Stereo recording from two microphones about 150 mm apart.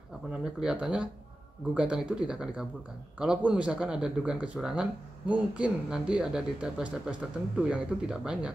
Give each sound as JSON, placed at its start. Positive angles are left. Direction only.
{"t": 0.3, "sound": "speech", "side_deg": -5}